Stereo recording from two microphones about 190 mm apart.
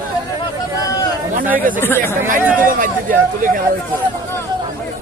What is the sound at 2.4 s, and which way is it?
Speech, 10° right (ahead or behind).